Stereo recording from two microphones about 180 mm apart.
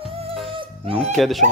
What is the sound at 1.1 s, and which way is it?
Speech, centre (ahead or behind).